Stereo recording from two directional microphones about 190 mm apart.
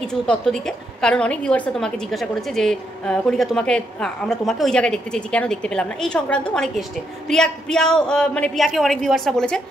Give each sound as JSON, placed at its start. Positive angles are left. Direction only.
{"t": 0.0, "sound": "a woman's voice", "side_deg": 5}